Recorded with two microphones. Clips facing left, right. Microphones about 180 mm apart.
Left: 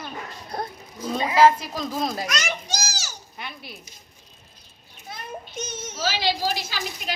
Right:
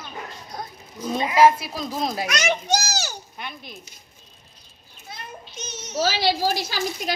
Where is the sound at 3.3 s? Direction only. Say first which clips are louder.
Right 1 dB; 5° left (ahead or behind).